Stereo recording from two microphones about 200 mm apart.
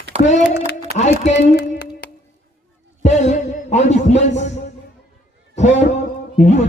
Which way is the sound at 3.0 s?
35° left (ahead or behind).